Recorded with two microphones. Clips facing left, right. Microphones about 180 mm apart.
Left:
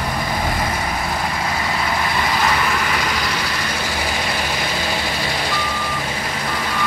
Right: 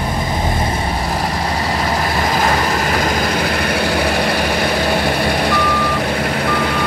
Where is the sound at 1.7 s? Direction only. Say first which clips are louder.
Right 4 dB; 40° right (ahead or behind).